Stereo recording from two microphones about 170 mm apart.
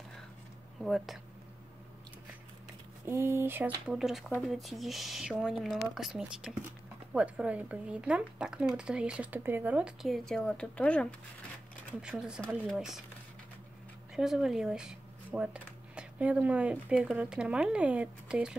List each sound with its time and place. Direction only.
0.8 s a woman's voice: centre (ahead or behind)
3.1 s a woman's voice: 15° right (ahead or behind); by 11.1 s 5° left (ahead or behind)
12.0 s a woman's voice: 5° right (ahead or behind)
14.1 s a woman's voice: centre (ahead or behind)